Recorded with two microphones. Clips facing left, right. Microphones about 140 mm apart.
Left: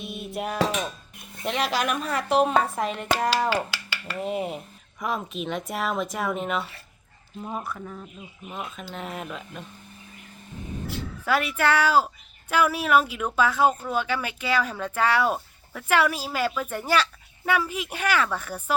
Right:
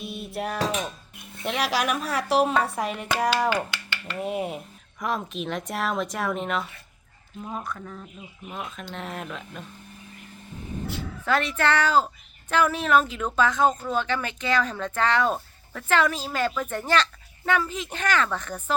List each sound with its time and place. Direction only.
0.0 s music: centre (ahead or behind)
0.3 s speech: centre (ahead or behind)
2.5 s speech: 35° left (ahead or behind)
2.7 s speech: centre (ahead or behind)
11.3 s speech: 10° left (ahead or behind)